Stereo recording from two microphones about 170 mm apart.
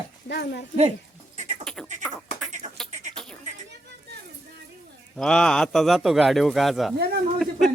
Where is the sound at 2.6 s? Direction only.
45° right (ahead or behind).